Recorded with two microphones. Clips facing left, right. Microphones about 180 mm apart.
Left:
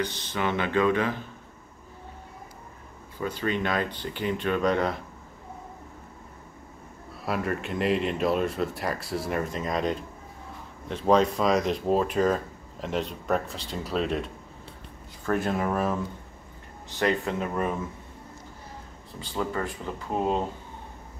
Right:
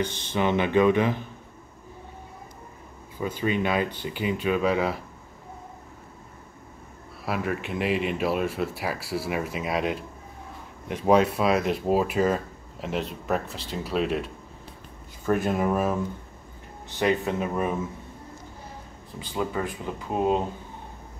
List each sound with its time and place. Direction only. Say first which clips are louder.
0.0 s speech: right 3 dB; 25° right (ahead or behind)
3.2 s speech: right 2 dB; 10° right (ahead or behind)
7.2 s speech: even; centre (ahead or behind)
15.2 s speech: right 2 dB; 20° right (ahead or behind)
15.5 s speech: right 2 dB; 5° right (ahead or behind)
17.3 s speech: right 2 dB; 10° right (ahead or behind)
19.1 s speech: right 1 dB; 15° right (ahead or behind)